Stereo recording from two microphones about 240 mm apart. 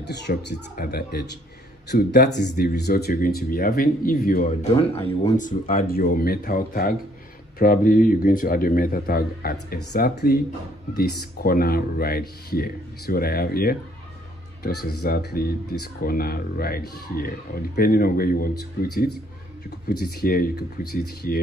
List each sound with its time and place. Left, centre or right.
0.0 s speech: left
14.9 s speech: left